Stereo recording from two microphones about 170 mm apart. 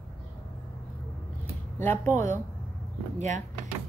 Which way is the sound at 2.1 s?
45° right (ahead or behind).